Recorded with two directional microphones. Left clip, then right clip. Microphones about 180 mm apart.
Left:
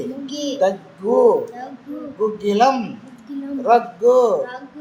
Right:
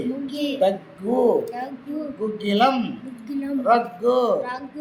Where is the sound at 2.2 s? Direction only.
25° left (ahead or behind).